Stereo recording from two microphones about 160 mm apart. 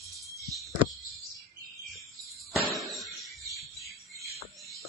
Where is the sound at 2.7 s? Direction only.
Centre (ahead or behind).